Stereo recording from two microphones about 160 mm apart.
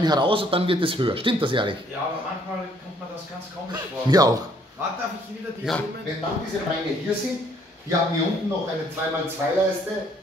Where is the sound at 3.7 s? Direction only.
25° right (ahead or behind).